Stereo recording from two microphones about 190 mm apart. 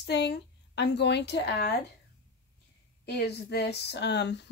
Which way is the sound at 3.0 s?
60° left (ahead or behind).